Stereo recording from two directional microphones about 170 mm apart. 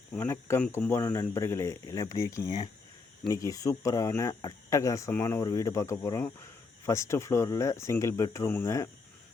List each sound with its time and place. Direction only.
0.1 s speech: 15° left (ahead or behind)